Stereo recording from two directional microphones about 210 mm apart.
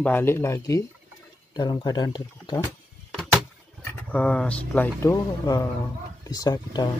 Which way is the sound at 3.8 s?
5° left (ahead or behind).